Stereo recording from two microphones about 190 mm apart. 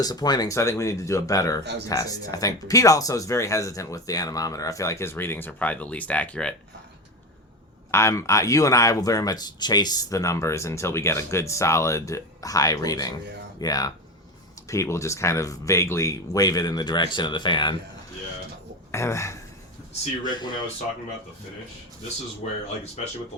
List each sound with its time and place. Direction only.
0.0 s speech: 20° left (ahead or behind)
7.9 s speech: 15° left (ahead or behind)
18.9 s speech: 15° left (ahead or behind)